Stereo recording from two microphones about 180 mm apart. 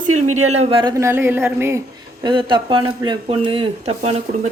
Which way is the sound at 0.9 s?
15° right (ahead or behind).